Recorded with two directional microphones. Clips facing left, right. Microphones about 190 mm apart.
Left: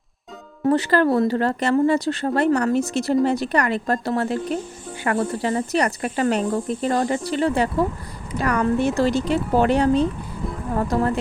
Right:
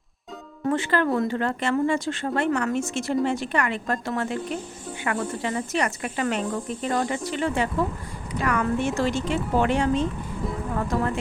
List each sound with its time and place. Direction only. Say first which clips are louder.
0.7 s speech: left 5 dB; 40° left (ahead or behind)